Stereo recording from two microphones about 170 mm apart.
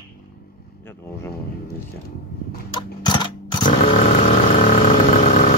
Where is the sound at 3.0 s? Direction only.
25° left (ahead or behind).